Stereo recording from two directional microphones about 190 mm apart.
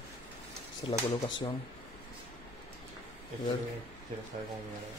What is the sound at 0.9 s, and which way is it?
Speech, 30° left (ahead or behind).